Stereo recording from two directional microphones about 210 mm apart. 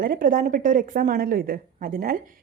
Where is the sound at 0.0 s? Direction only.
40° right (ahead or behind).